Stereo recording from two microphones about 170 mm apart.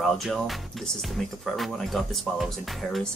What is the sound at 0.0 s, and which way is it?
Speech, centre (ahead or behind).